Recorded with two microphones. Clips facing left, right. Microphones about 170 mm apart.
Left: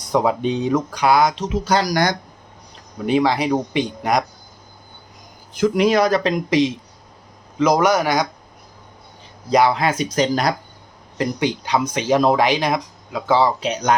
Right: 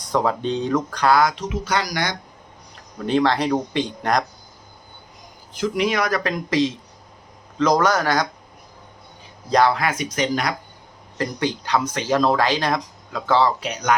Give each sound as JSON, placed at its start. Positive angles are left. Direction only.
{"t": 0.1, "sound": "speech", "side_deg": 10}
{"t": 1.6, "sound": "speech", "side_deg": 35}
{"t": 3.1, "sound": "speech", "side_deg": 10}
{"t": 5.5, "sound": "speech", "side_deg": 45}
{"t": 9.5, "sound": "speech", "side_deg": 10}
{"t": 9.7, "sound": "speech", "side_deg": 25}
{"t": 11.2, "sound": "speech", "side_deg": 15}